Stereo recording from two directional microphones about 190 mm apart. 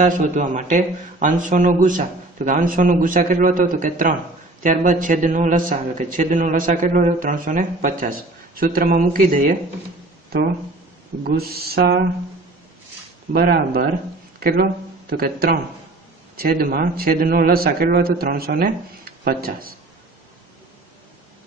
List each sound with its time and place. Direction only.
0.0 s a man's voice: 40° right (ahead or behind)
10.3 s a sound: 55° right (ahead or behind)
11.2 s a man's voice: 55° right (ahead or behind)
13.3 s a man's voice: 50° right (ahead or behind)